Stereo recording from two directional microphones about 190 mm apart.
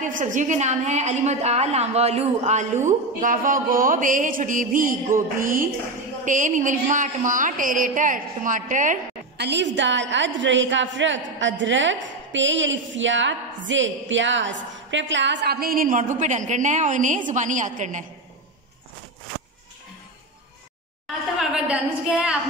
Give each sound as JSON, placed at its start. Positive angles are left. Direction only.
{"t": 0.0, "sound": "a woman's voice", "side_deg": -40}
{"t": 9.4, "sound": "a woman's voice", "side_deg": -65}
{"t": 21.4, "sound": "a woman's voice", "side_deg": -5}